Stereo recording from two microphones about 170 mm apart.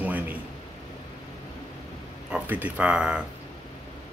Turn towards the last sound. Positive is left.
turn(degrees=-5)  # may be behind; listen again after turning